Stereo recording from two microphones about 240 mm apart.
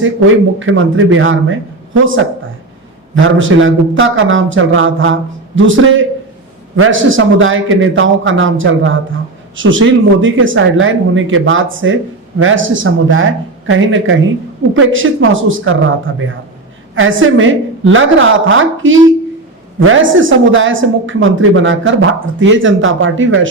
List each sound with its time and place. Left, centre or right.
0.6 s a woman's voice: right